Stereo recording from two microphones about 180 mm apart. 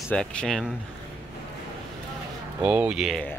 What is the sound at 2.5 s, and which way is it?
Speech, 5° right (ahead or behind).